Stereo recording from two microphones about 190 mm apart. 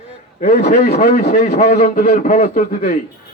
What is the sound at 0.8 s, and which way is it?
Speech, 55° left (ahead or behind).